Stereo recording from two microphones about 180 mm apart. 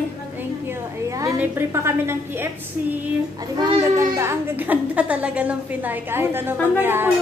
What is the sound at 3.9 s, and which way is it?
A woman's voice, 15° right (ahead or behind).